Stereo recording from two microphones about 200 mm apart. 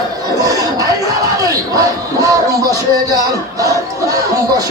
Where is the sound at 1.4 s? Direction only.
20° right (ahead or behind).